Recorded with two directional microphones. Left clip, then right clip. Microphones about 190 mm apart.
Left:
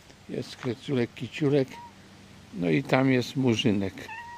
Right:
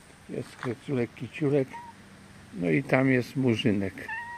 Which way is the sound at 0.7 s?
20° left (ahead or behind).